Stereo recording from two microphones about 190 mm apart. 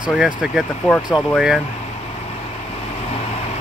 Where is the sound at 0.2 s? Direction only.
Centre (ahead or behind).